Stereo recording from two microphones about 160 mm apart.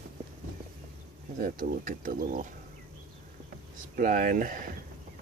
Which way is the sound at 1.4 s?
60° right (ahead or behind).